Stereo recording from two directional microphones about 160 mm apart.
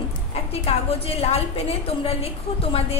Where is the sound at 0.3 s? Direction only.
40° left (ahead or behind).